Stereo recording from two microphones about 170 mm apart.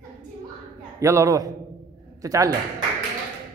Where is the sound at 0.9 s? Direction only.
20° right (ahead or behind).